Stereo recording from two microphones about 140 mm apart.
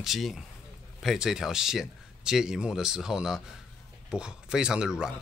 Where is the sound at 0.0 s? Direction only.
Centre (ahead or behind).